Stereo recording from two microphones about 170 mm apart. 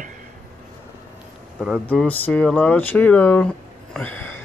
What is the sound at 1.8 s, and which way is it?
Speech, 10° left (ahead or behind).